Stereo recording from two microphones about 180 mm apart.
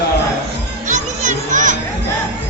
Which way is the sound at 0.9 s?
45° right (ahead or behind).